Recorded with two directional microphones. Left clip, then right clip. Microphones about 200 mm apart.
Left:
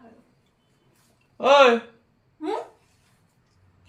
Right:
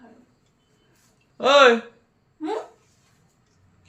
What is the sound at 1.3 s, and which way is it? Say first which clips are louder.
Speech: right 1 dB; 25° right (ahead or behind).